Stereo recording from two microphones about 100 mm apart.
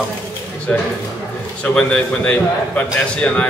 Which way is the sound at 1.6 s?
10° left (ahead or behind).